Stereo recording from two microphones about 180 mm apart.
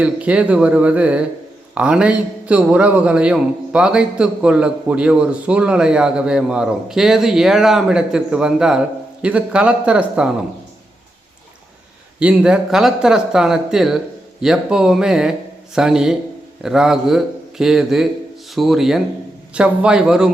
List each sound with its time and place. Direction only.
0.0 s a man's voice: 5° right (ahead or behind)
12.2 s a man's voice: 5° right (ahead or behind)